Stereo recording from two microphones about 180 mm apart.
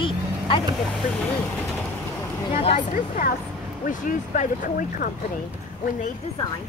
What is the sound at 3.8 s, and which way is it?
Speech, 45° left (ahead or behind).